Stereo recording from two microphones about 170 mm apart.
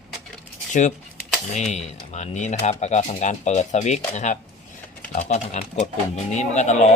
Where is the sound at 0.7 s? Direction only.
45° left (ahead or behind).